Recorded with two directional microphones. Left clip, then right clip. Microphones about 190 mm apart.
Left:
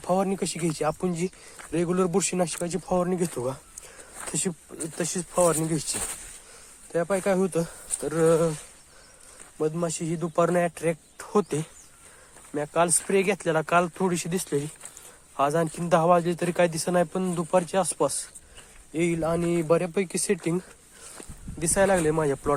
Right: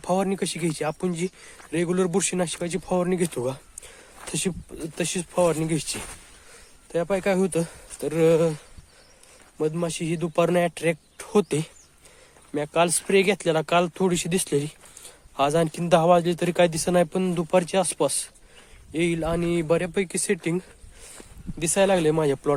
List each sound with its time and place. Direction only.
0.0 s speech: 15° right (ahead or behind)
6.9 s speech: 20° right (ahead or behind)
9.6 s speech: 25° right (ahead or behind)